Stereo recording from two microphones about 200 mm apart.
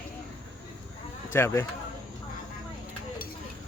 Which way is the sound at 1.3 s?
10° left (ahead or behind).